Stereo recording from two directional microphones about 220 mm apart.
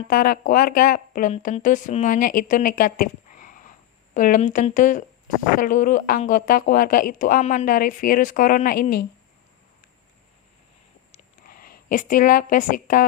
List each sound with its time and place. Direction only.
0.1 s speech: 40° left (ahead or behind)
11.4 s speech: 40° left (ahead or behind)